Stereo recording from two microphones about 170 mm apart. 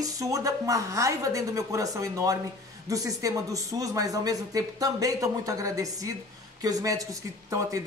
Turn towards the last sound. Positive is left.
turn(degrees=-20)  # may be behind; listen again after turning